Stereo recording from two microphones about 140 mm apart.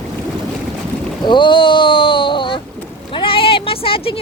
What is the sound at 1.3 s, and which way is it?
Boat, 35° left (ahead or behind).